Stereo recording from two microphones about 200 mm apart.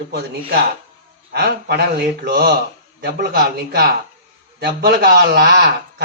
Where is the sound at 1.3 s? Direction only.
50° right (ahead or behind).